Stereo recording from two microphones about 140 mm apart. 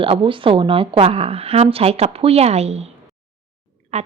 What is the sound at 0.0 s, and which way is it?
A woman's voice, 40° right (ahead or behind).